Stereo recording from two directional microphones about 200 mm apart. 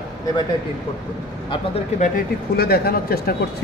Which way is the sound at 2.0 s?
45° left (ahead or behind).